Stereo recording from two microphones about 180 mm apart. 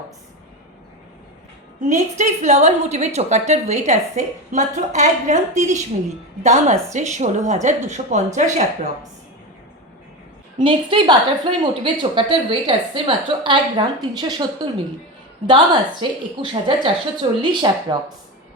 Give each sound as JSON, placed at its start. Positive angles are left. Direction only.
{"t": 1.9, "sound": "a woman's voice", "side_deg": -40}
{"t": 10.6, "sound": "a woman's voice", "side_deg": -25}
{"t": 16.0, "sound": "a woman's voice", "side_deg": -30}